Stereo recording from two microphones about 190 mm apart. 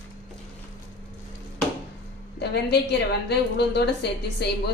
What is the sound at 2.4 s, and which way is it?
A woman's voice, 60° left (ahead or behind).